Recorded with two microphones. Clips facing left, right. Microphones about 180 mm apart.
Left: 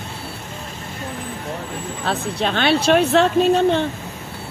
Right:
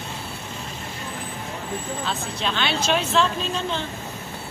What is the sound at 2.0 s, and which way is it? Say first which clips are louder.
Speech: left 6 dB; 60° left (ahead or behind).